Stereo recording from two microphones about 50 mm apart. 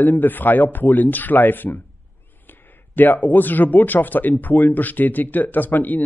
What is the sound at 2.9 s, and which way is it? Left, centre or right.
A man's voice, left.